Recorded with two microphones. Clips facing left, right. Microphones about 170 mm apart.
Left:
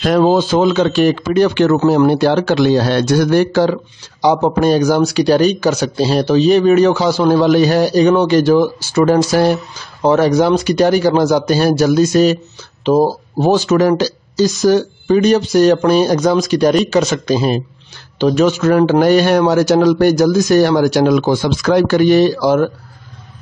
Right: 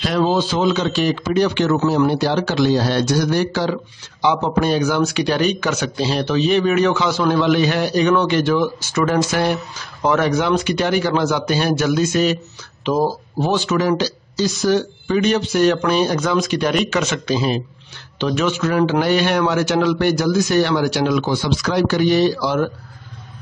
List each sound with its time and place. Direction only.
0.0 s a man's voice: 45° left (ahead or behind)
4.2 s a man's voice: 40° left (ahead or behind)